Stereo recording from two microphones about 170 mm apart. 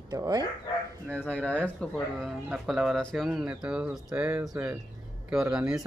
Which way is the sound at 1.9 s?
Centre (ahead or behind).